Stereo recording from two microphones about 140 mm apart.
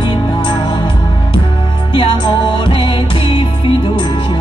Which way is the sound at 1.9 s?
35° left (ahead or behind).